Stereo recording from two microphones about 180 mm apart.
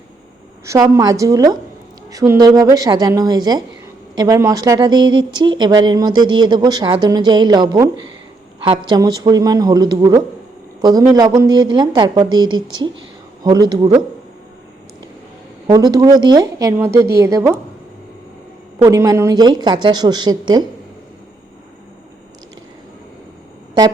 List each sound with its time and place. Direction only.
0.6 s a woman's voice: 15° right (ahead or behind)
15.6 s a woman's voice: 20° right (ahead or behind)
18.8 s a woman's voice: 15° right (ahead or behind)